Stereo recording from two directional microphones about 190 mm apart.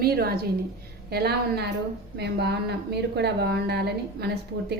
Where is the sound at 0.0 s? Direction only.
55° right (ahead or behind).